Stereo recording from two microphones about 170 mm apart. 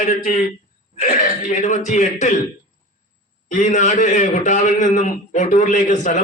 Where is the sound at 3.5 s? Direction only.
45° left (ahead or behind).